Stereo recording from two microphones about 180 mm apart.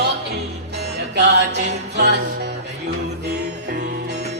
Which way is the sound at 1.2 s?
75° right (ahead or behind).